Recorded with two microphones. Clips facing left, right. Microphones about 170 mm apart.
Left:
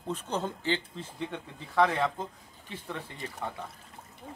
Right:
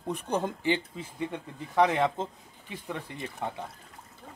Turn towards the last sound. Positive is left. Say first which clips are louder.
# right 2 dB
turn(degrees=-15)  # may be behind; listen again after turning